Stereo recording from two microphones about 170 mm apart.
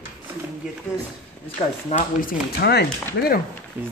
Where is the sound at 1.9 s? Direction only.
40° left (ahead or behind).